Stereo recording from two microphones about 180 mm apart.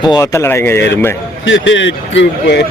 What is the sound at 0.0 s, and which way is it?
Speech, 20° left (ahead or behind).